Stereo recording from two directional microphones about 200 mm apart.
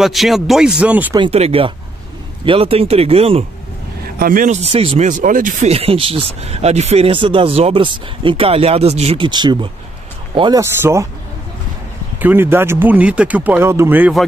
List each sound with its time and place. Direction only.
0.0 s speech: centre (ahead or behind)
1.1 s speech: 25° right (ahead or behind)
4.2 s speech: 45° right (ahead or behind); by 10.6 s 25° right (ahead or behind)
10.6 s speech: 15° right (ahead or behind)
12.2 s speech: 10° right (ahead or behind)